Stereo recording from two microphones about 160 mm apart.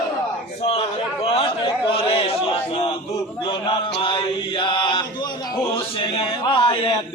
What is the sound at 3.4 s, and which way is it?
Chant, 30° left (ahead or behind).